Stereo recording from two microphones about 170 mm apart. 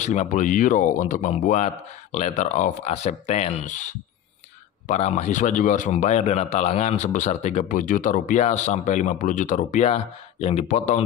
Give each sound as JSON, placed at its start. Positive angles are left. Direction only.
{"t": 0.0, "sound": "speech", "side_deg": 45}